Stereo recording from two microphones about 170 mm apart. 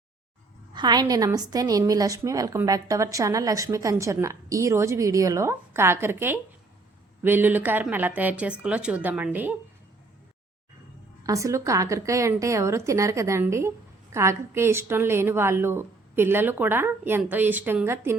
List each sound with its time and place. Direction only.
0.7 s a woman's voice: 25° right (ahead or behind)
11.2 s a woman's voice: 20° right (ahead or behind)